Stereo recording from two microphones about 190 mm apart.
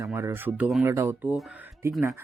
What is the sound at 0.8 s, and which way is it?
Speech, 15° right (ahead or behind).